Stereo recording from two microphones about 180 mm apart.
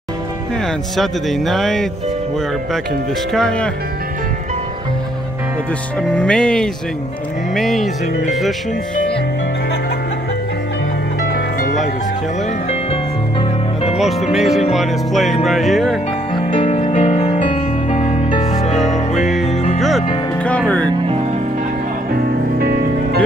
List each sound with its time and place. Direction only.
0.9 s music: centre (ahead or behind)
3.3 s music: 5° left (ahead or behind)
5.9 s music: 5° left (ahead or behind)
12.6 s music: 35° left (ahead or behind)
14.3 s music: centre (ahead or behind)
16.3 s music: 30° left (ahead or behind)
20.3 s music: 5° left (ahead or behind)
20.8 s music: 25° right (ahead or behind)
22.1 s music: 60° right (ahead or behind)